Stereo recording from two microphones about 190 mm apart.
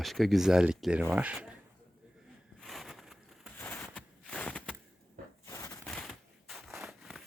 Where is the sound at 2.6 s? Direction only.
Centre (ahead or behind).